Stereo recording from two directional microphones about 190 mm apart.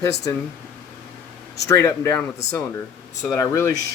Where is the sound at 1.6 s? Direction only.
15° left (ahead or behind).